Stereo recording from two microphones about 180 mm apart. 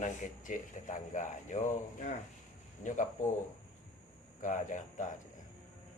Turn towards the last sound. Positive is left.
turn(degrees=45)  # may be behind; listen again after turning